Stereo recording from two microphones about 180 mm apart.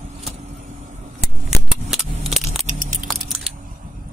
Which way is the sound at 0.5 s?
40° right (ahead or behind).